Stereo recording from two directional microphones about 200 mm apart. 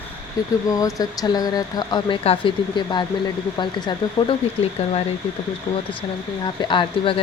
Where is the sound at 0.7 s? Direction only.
15° left (ahead or behind).